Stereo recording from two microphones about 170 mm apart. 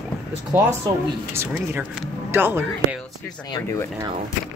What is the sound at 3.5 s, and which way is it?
Speech, 15° left (ahead or behind).